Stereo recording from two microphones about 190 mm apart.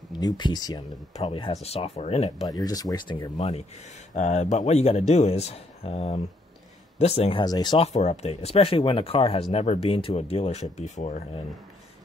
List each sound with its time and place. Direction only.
0.1 s speech: 20° left (ahead or behind)
1.1 s speech: 30° left (ahead or behind)
2.4 s speech: 20° left (ahead or behind)
3.3 s speech: 35° left (ahead or behind)
7.9 s speech: 35° left (ahead or behind)